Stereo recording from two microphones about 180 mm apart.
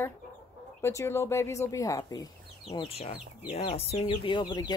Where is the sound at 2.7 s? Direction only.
30° left (ahead or behind).